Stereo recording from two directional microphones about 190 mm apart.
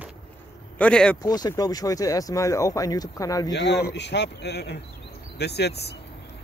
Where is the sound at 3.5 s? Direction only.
65° left (ahead or behind).